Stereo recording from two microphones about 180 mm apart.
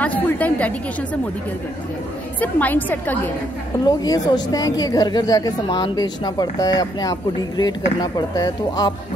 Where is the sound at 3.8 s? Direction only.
20° left (ahead or behind).